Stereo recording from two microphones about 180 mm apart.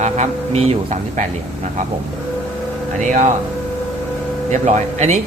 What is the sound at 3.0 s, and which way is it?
Speech, 40° right (ahead or behind).